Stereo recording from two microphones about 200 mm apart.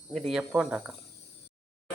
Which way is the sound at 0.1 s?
Centre (ahead or behind).